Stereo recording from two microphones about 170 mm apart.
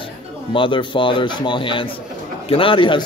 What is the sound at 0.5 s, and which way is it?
Speech, 30° left (ahead or behind).